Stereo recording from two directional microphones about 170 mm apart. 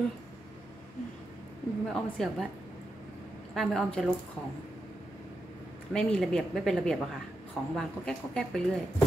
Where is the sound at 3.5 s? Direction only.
Centre (ahead or behind).